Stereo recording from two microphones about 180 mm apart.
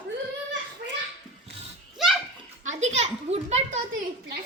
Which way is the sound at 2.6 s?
40° right (ahead or behind).